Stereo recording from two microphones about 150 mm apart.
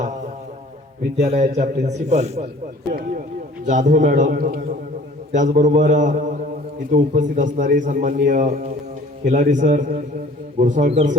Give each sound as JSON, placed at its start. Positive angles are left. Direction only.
{"t": 0.0, "sound": "music", "side_deg": -50}
{"t": 1.2, "sound": "a man's voice", "side_deg": -50}
{"t": 3.7, "sound": "a man's voice", "side_deg": -55}